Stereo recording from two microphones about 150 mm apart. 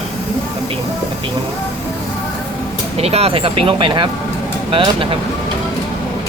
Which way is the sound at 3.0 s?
40° right (ahead or behind).